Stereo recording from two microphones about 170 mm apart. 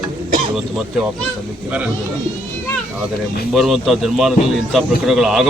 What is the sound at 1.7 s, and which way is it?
Speech, 10° right (ahead or behind).